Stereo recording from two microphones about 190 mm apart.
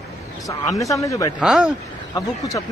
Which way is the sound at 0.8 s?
15° left (ahead or behind).